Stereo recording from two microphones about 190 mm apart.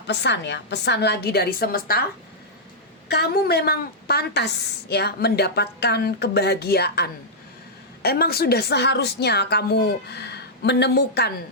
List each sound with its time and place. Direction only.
0.1 s a woman's voice: 65° left (ahead or behind)
3.1 s a woman's voice: 55° left (ahead or behind)